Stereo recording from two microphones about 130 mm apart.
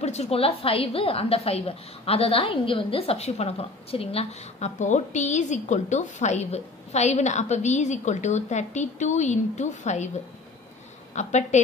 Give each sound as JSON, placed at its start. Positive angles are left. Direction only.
{"t": 0.0, "sound": "a woman's voice", "side_deg": 55}
{"t": 11.1, "sound": "a woman's voice", "side_deg": 65}